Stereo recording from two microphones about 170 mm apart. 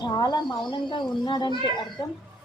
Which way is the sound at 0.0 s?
25° left (ahead or behind).